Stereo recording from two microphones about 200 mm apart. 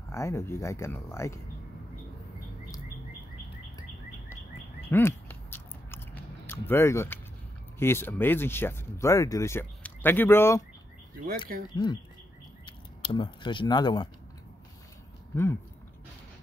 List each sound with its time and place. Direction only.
0.1 s speech: 15° left (ahead or behind)
4.8 s biting: 10° left (ahead or behind)
7.8 s speech: 10° left (ahead or behind)
11.7 s speech: 20° left (ahead or behind)
15.3 s speech: 15° left (ahead or behind)